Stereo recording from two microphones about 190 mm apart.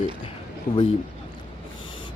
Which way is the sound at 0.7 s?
45° left (ahead or behind).